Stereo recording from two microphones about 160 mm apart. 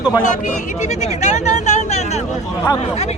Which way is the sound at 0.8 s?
45° left (ahead or behind).